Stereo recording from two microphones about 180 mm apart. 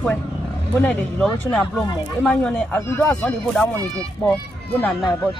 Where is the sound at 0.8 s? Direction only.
5° left (ahead or behind).